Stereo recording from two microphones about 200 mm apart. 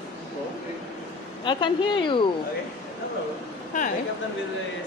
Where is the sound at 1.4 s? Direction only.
25° left (ahead or behind).